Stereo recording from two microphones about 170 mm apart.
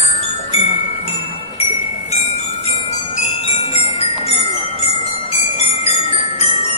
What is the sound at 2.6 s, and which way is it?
Jingle bell, 40° left (ahead or behind).